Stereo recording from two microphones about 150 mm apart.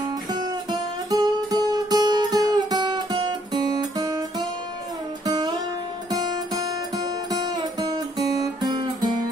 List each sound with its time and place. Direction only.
0.3 s music: 25° right (ahead or behind)
5.2 s music: 25° right (ahead or behind)